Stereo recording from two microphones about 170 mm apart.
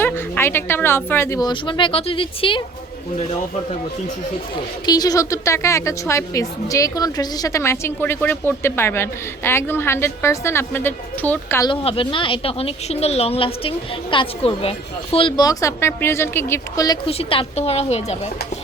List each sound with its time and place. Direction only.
0.0 s a woman's voice: 15° left (ahead or behind); by 2.6 s 30° left (ahead or behind)
4.9 s a woman's voice: 20° left (ahead or behind)
11.7 s a woman's voice: 35° left (ahead or behind)
15.4 s a woman's voice: 20° left (ahead or behind)
17.1 s a woman's voice: 35° left (ahead or behind)